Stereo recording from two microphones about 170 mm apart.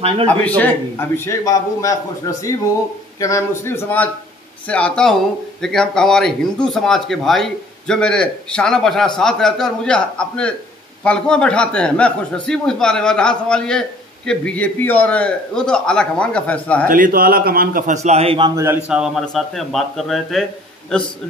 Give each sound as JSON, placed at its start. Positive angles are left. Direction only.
{"t": 0.6, "sound": "a man's voice", "side_deg": 15}
{"t": 16.8, "sound": "a man's voice", "side_deg": -55}
{"t": 18.9, "sound": "a man's voice", "side_deg": -5}